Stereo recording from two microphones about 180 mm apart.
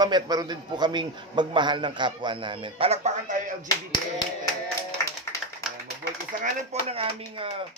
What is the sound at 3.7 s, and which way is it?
Speech, 25° left (ahead or behind).